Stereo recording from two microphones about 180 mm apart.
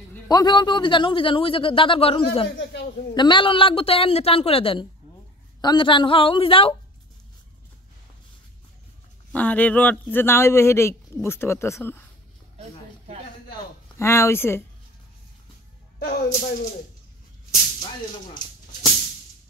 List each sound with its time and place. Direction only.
0.3 s speech: 25° left (ahead or behind)
2.5 s a sound: 70° left (ahead or behind)
3.2 s a woman's voice: 25° left (ahead or behind)
9.3 s a man's voice: 10° left (ahead or behind)
13.9 s a man's voice: 15° left (ahead or behind)
16.0 s speech: 60° left (ahead or behind)